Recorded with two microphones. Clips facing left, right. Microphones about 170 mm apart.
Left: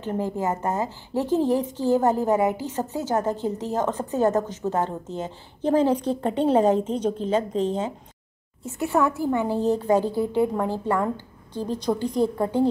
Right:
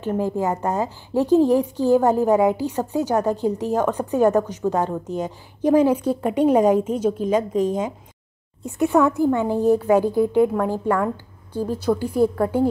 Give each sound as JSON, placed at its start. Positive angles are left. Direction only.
{"t": 0.0, "sound": "a woman's voice", "side_deg": -15}
{"t": 11.5, "sound": "a woman's voice", "side_deg": -10}